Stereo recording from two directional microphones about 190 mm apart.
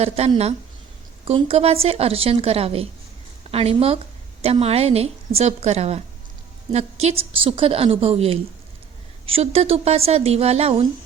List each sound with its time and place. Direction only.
0.0 s a woman's voice: 35° right (ahead or behind)
7.0 s a woman's voice: 30° right (ahead or behind)